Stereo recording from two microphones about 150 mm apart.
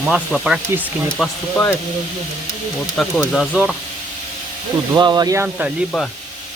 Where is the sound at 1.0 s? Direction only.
5° left (ahead or behind).